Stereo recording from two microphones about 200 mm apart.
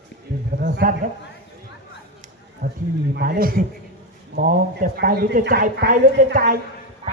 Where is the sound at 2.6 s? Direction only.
55° right (ahead or behind).